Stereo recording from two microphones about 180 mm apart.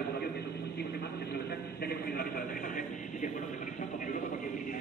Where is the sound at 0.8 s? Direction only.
65° left (ahead or behind).